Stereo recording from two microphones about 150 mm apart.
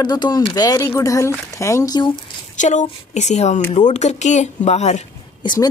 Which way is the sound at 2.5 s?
55° left (ahead or behind).